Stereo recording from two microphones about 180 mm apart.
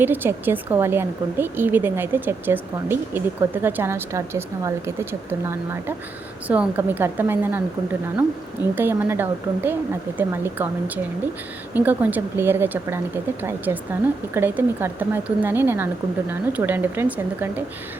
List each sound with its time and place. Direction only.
0.0 s a woman's voice: 10° right (ahead or behind)
8.7 s a woman's voice: 10° right (ahead or behind)